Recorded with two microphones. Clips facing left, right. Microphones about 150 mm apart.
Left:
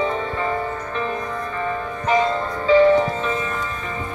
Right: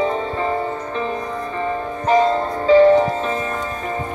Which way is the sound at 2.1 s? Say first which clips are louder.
Right 4 dB; 35° right (ahead or behind).